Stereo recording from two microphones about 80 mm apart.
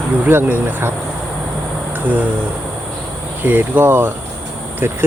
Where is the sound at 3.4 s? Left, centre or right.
Right.